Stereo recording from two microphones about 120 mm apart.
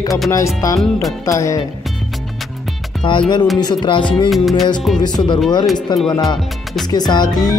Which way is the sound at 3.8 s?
40° left (ahead or behind).